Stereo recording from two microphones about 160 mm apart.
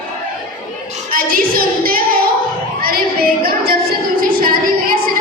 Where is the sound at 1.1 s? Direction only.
65° right (ahead or behind).